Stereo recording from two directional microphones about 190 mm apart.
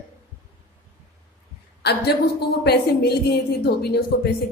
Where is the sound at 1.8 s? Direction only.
55° left (ahead or behind).